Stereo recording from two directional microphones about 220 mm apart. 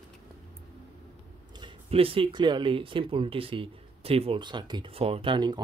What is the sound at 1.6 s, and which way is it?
Speech, 25° right (ahead or behind).